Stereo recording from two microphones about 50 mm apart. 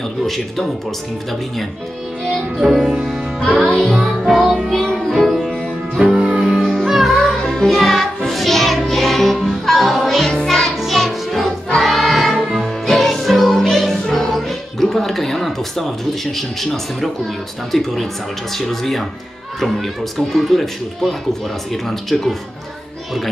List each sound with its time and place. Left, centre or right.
2.6 s speech: centre
4.0 s music: centre
6.1 s music: centre
6.4 s music: centre
7.4 s music: centre
11.7 s choir: centre
12.4 s music: centre
17.6 s speech: centre